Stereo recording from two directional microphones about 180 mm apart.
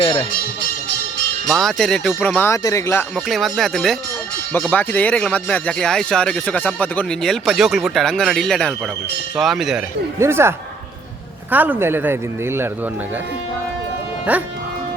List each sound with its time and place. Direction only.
0.0 s speech: 30° left (ahead or behind)
1.5 s speech: centre (ahead or behind)
3.2 s speech: centre (ahead or behind)
10.2 s speech: 15° right (ahead or behind)
11.5 s speech: 10° right (ahead or behind)
14.3 s speech: 10° right (ahead or behind)